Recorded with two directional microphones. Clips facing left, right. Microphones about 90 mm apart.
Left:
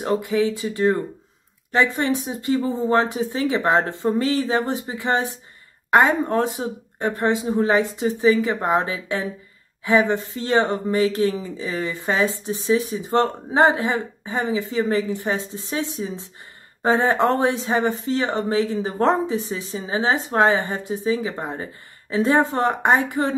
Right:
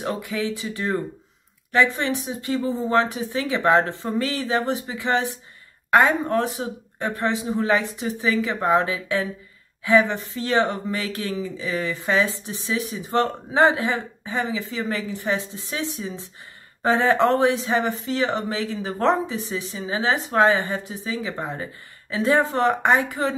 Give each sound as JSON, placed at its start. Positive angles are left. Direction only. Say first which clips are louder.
{"t": 0.0, "sound": "a woman's voice", "louder": "left 6 dB", "side_deg": 30}